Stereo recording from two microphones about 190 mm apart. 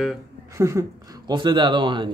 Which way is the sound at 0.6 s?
15° right (ahead or behind).